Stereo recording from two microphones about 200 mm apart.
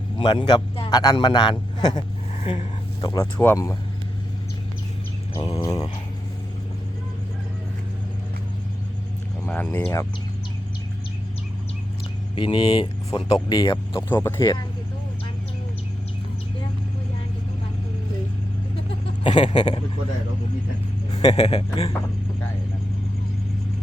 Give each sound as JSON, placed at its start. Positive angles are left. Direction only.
{"t": 0.2, "sound": "a man's voice", "side_deg": 25}
{"t": 2.0, "sound": "a sound", "side_deg": 35}
{"t": 3.4, "sound": "speech", "side_deg": 15}
{"t": 5.4, "sound": "a man's voice", "side_deg": 25}
{"t": 9.5, "sound": "speech", "side_deg": 10}
{"t": 12.4, "sound": "a man's voice", "side_deg": 25}
{"t": 14.1, "sound": "speech", "side_deg": 10}
{"t": 19.2, "sound": "a man's voice", "side_deg": 30}
{"t": 21.1, "sound": "a man's voice", "side_deg": 20}